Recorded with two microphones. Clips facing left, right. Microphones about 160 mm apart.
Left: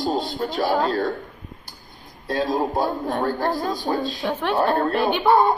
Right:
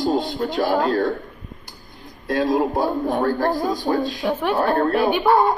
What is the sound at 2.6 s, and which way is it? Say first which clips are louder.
A man's voice: right 2 dB; 10° right (ahead or behind).